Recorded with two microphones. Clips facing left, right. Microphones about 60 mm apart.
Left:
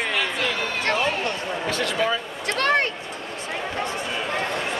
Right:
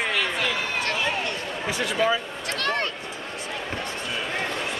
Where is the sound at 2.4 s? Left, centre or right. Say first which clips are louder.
Left 5 dB; left.